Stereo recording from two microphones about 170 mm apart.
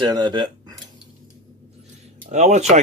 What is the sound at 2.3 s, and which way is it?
Speech, 45° right (ahead or behind).